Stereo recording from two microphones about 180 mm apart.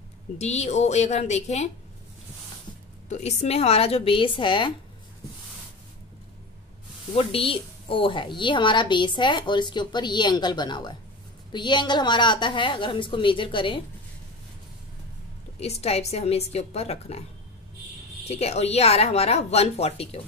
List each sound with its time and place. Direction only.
0.4 s speech: 40° left (ahead or behind)
3.1 s speech: 40° left (ahead or behind)
7.2 s a woman's voice: 30° left (ahead or behind)
15.6 s speech: 35° left (ahead or behind)
18.2 s speech: 35° left (ahead or behind)